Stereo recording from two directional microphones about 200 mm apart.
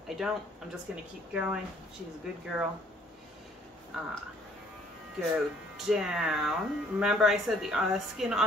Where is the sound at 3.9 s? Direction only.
5° right (ahead or behind).